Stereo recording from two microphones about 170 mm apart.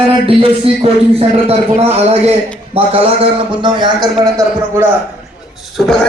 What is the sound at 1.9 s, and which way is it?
A man's voice, 40° right (ahead or behind).